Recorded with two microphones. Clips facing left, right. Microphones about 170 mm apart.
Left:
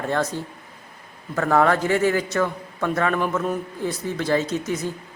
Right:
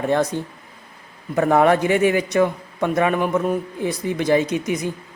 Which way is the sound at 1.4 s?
20° right (ahead or behind).